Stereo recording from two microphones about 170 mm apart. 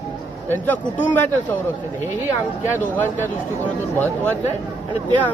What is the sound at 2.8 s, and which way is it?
A man's voice, 10° left (ahead or behind).